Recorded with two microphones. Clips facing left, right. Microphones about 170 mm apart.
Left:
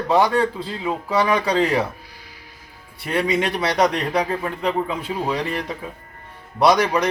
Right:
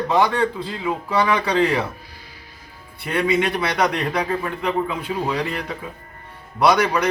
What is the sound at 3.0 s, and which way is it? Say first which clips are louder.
A man's voice: right 1 dB; 35° left (ahead or behind).